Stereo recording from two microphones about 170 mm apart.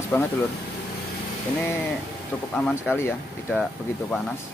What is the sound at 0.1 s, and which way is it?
Speech, 10° left (ahead or behind).